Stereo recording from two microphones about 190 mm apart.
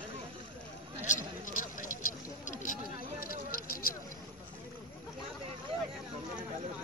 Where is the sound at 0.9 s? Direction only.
40° left (ahead or behind).